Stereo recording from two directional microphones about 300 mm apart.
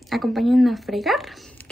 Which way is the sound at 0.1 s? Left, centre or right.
Centre.